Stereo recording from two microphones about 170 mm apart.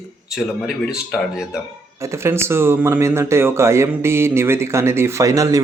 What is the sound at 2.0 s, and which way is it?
Speech, 15° right (ahead or behind).